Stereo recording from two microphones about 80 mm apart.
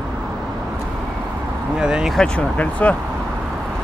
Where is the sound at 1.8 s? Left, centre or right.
Centre.